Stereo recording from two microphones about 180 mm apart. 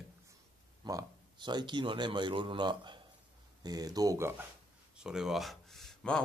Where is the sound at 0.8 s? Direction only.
20° right (ahead or behind).